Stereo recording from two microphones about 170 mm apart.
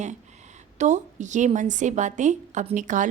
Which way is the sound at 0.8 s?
45° right (ahead or behind).